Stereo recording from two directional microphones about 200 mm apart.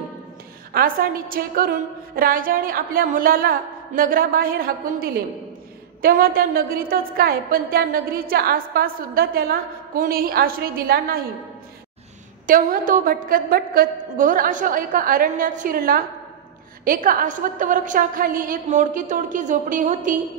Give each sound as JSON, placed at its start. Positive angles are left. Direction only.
{"t": 0.7, "sound": "a woman's voice", "side_deg": -45}
{"t": 12.4, "sound": "a woman's voice", "side_deg": -40}